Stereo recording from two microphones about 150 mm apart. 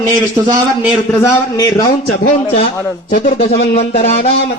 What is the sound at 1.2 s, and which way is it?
Speech, 25° left (ahead or behind).